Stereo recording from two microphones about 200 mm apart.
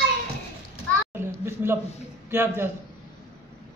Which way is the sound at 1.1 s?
10° right (ahead or behind).